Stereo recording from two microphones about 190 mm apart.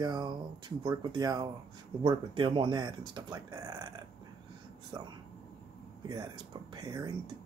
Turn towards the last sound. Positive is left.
turn(degrees=-20)  # may be behind; listen again after turning